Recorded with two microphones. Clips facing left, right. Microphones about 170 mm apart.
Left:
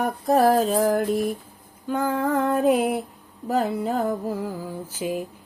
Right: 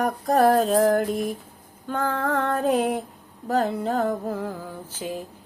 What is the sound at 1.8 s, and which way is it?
Female singing, 10° left (ahead or behind).